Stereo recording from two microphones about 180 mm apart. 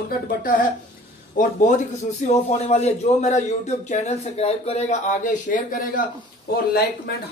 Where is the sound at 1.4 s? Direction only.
45° left (ahead or behind).